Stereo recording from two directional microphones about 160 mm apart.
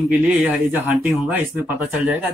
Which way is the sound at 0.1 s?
10° right (ahead or behind).